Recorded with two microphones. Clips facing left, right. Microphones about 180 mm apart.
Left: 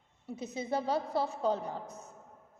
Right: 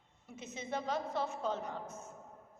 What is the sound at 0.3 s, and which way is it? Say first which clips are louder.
A woman's voice: left 6 dB; 35° left (ahead or behind).